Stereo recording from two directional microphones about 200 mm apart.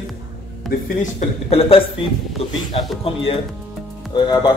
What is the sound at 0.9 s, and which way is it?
Speech, 35° left (ahead or behind).